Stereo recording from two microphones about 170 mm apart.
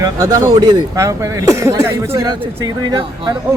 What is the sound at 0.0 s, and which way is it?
A man's voice, 20° right (ahead or behind).